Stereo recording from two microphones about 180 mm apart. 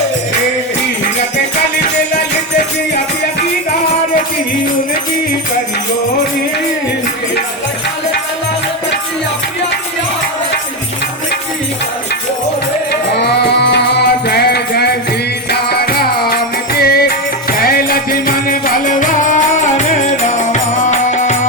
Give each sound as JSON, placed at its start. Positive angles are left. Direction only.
{"t": 12.9, "sound": "music", "side_deg": 70}